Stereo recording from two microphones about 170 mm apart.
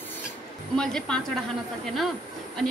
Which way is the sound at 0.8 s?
5° left (ahead or behind).